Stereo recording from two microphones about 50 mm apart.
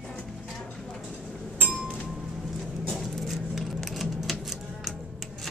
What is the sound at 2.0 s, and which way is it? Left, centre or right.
Music, centre.